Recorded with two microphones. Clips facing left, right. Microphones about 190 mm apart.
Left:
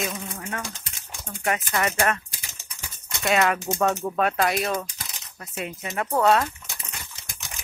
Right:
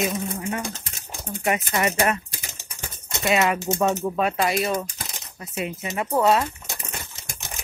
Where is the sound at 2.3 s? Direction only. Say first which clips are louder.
Right 5 dB; 50° right (ahead or behind).